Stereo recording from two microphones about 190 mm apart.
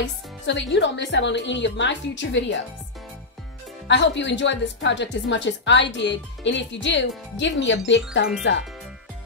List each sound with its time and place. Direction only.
0.0 s speech: 70° left (ahead or behind)
3.8 s speech: 70° left (ahead or behind)